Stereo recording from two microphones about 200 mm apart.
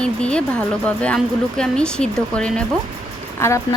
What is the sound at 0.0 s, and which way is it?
Speech, 5° left (ahead or behind).